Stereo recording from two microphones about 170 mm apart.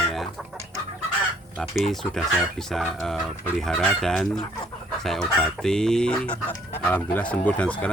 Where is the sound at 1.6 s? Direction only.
Centre (ahead or behind).